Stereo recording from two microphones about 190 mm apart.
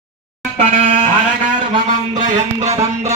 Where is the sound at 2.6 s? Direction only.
35° right (ahead or behind).